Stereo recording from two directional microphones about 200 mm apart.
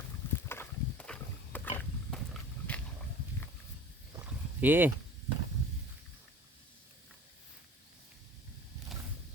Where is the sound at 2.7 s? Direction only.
5° left (ahead or behind).